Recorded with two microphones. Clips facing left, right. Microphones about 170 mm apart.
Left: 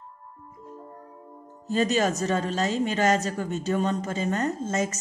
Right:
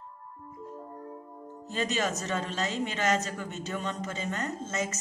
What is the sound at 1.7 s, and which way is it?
Speech, 40° left (ahead or behind).